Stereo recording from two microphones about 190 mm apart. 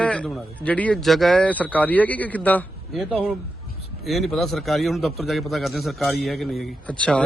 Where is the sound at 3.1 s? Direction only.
5° right (ahead or behind).